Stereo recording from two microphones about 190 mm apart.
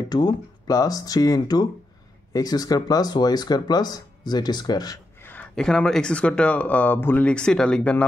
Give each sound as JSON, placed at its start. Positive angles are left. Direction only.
{"t": 0.1, "sound": "speech", "side_deg": 20}